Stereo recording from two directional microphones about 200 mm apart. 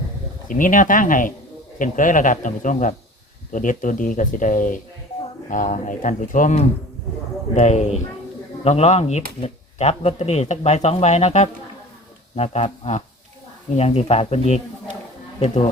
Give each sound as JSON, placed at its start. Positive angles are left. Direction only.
{"t": 0.4, "sound": "speech", "side_deg": 40}